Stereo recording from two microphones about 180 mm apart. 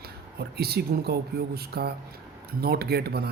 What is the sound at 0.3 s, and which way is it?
Speech, 60° right (ahead or behind).